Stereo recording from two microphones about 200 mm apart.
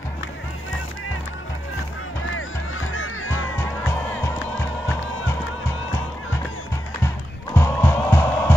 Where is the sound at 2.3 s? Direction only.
85° left.